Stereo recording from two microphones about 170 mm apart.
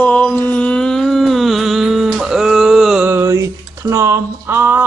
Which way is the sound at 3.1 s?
15° right (ahead or behind).